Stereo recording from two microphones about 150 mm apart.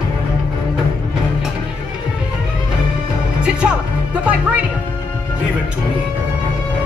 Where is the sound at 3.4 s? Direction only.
5° right (ahead or behind).